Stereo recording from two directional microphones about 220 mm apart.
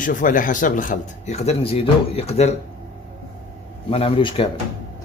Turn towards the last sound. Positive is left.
turn(degrees=25)  # may be behind; listen again after turning